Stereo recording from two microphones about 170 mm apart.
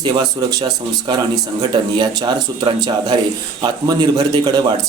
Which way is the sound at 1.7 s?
25° right (ahead or behind).